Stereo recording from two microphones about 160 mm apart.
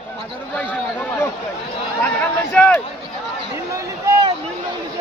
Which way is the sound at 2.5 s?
10° left (ahead or behind).